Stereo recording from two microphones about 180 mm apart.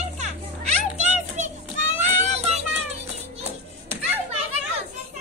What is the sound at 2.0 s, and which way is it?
Music, 35° right (ahead or behind).